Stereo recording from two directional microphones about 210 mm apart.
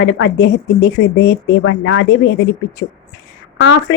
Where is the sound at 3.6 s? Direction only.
60° left (ahead or behind).